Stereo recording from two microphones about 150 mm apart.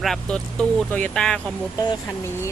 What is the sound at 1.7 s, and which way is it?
Speech, 20° left (ahead or behind).